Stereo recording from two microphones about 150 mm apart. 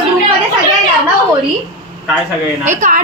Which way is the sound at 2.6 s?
55° right (ahead or behind).